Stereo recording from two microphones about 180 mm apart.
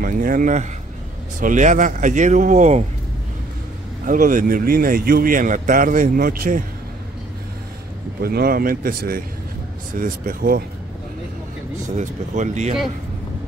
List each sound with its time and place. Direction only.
0.0 s speech: 50° right (ahead or behind)
4.0 s speech: 50° right (ahead or behind)
8.2 s speech: 60° right (ahead or behind)
12.0 s speech: 40° right (ahead or behind)